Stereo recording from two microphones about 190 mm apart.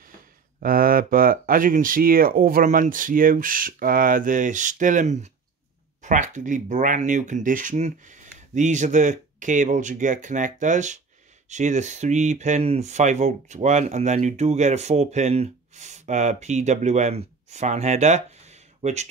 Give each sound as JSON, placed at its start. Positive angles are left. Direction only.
{"t": 0.6, "sound": "speech", "side_deg": -50}